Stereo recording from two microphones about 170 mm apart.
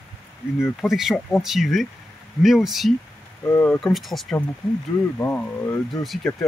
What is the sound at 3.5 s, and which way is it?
Speech, 10° left (ahead or behind).